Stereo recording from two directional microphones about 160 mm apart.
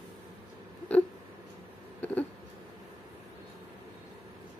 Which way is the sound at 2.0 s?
10° left (ahead or behind).